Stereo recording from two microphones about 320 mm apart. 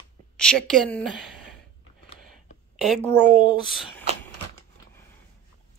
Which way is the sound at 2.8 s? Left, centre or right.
Centre.